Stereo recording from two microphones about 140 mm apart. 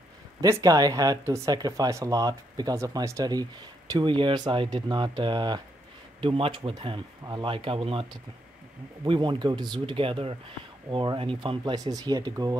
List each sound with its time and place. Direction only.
0.4 s speech: 25° right (ahead or behind)